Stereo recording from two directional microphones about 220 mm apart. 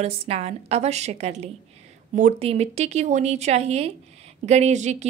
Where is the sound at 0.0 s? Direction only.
30° right (ahead or behind).